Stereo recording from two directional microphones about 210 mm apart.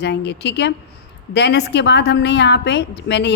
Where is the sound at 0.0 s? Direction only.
55° left (ahead or behind).